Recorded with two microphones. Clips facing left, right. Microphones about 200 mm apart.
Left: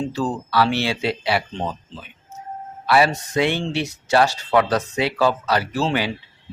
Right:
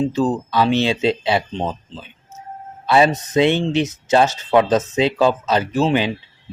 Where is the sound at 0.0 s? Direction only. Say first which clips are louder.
Right 5 dB; 20° right (ahead or behind).